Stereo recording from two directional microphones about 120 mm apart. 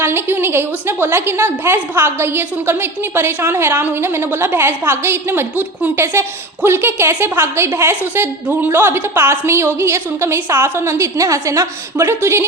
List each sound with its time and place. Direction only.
0.0 s a woman's voice: 20° right (ahead or behind)